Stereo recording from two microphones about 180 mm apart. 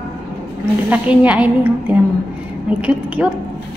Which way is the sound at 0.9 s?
10° right (ahead or behind).